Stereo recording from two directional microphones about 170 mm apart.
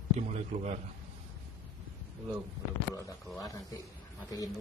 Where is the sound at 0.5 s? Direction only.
40° right (ahead or behind).